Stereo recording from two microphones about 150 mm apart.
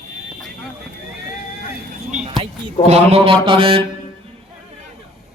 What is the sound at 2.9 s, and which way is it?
Speech, 40° right (ahead or behind).